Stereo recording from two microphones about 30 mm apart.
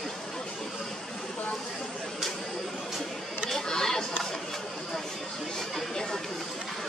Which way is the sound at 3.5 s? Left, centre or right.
Centre.